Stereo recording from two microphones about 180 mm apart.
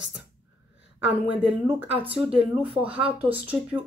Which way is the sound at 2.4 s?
30° right (ahead or behind).